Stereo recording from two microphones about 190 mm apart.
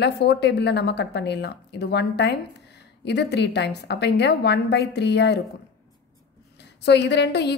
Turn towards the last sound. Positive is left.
turn(degrees=60)  # may be behind; listen again after turning